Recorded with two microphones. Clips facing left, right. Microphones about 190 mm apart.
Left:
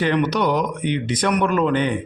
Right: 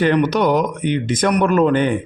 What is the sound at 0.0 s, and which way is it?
A man's voice, 45° right (ahead or behind).